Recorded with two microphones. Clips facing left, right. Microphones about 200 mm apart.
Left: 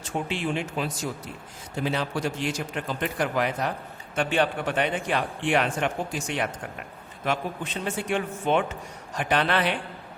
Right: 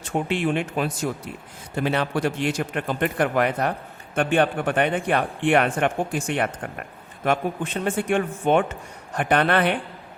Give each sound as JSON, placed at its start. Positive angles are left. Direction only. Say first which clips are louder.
{"t": 0.0, "sound": "a man's voice", "louder": "right 5 dB", "side_deg": -55}